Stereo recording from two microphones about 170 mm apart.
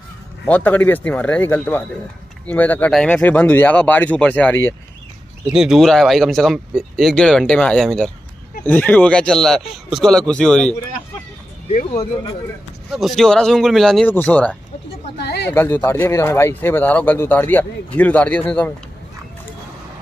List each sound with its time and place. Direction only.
0.5 s speech: 10° left (ahead or behind)
5.5 s speech: 5° right (ahead or behind)
12.9 s speech: centre (ahead or behind)
15.1 s speech: 75° left (ahead or behind)
15.5 s speech: 15° left (ahead or behind)